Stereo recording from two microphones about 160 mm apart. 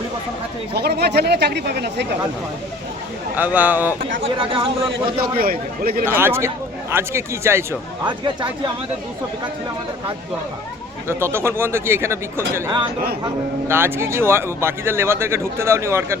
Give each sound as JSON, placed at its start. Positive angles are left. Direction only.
{"t": 0.7, "sound": "speech", "side_deg": -90}
{"t": 3.3, "sound": "speech", "side_deg": -10}
{"t": 4.2, "sound": "speech", "side_deg": -35}
{"t": 5.2, "sound": "speech", "side_deg": -70}
{"t": 6.1, "sound": "speech", "side_deg": -15}
{"t": 8.0, "sound": "speech", "side_deg": -30}
{"t": 11.1, "sound": "speech", "side_deg": -15}